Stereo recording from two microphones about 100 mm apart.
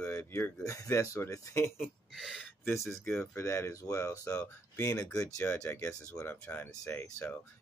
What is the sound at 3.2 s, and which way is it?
Speech, 25° left (ahead or behind).